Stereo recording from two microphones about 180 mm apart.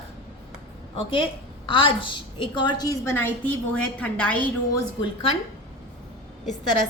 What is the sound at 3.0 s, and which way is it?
A woman's voice, 15° left (ahead or behind).